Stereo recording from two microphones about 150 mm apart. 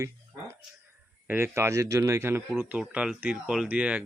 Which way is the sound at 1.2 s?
15° right (ahead or behind).